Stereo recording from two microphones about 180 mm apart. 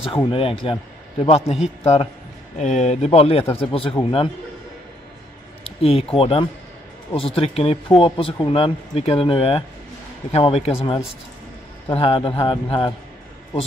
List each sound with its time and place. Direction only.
0.1 s speech: 30° left (ahead or behind)
5.8 s speech: 35° left (ahead or behind)